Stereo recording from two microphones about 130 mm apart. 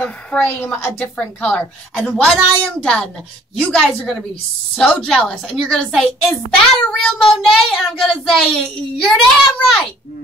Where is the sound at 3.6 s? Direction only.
5° left (ahead or behind).